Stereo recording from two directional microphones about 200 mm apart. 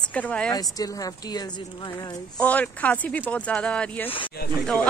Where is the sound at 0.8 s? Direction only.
15° left (ahead or behind).